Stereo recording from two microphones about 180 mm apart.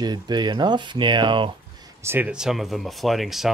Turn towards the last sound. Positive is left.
turn(degrees=0)  # may be behind; listen again after turning